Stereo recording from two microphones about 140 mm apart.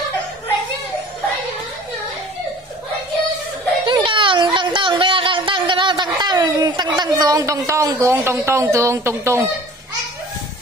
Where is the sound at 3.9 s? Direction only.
35° right (ahead or behind); by 9.3 s 20° right (ahead or behind).